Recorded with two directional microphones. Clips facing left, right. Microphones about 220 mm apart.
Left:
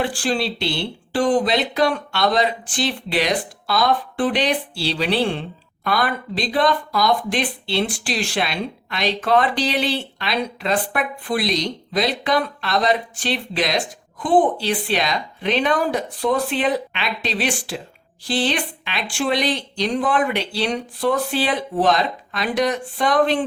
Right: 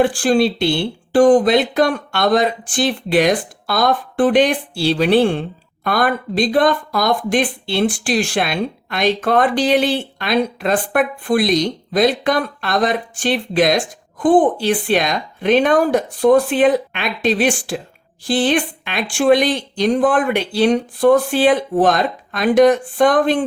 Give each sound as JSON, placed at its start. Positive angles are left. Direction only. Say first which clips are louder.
{"t": 0.0, "sound": "speech", "louder": "right 8 dB", "side_deg": -50}